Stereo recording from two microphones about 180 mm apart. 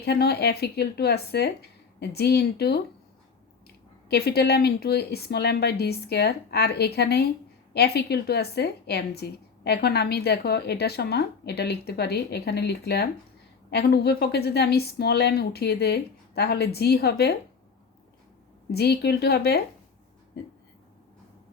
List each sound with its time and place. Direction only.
0.0 s a woman's voice: 65° left (ahead or behind)
4.1 s a woman's voice: 65° left (ahead or behind)
18.7 s a woman's voice: 60° left (ahead or behind)